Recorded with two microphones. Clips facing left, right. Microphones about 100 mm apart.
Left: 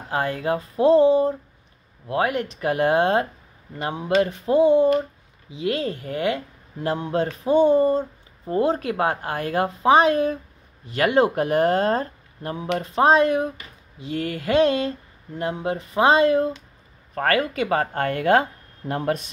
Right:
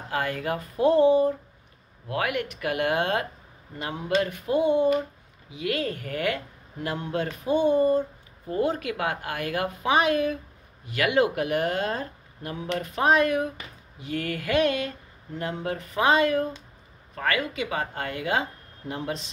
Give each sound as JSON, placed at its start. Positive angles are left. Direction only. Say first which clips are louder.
{"t": 0.1, "sound": "a woman's voice", "louder": "left 4 dB", "side_deg": 25}
{"t": 17.1, "sound": "speech", "louder": "left 6 dB", "side_deg": 45}